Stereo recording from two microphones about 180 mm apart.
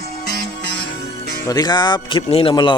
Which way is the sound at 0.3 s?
65° left (ahead or behind).